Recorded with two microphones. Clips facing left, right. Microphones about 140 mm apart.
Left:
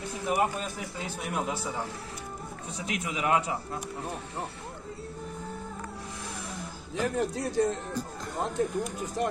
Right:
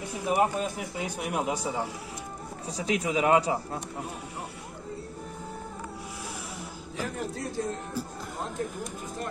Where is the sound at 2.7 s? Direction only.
35° right (ahead or behind).